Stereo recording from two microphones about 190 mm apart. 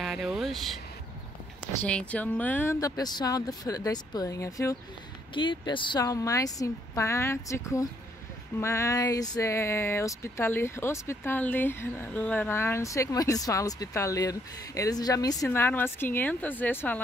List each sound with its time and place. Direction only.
0.0 s vehicle: centre (ahead or behind)
1.8 s speech: 5° left (ahead or behind)